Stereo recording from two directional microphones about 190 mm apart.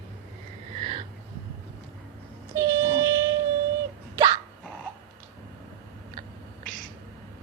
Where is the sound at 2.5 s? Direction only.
15° right (ahead or behind).